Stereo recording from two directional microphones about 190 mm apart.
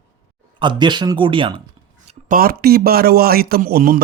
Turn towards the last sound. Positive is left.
turn(degrees=-50)  # may be behind; listen again after turning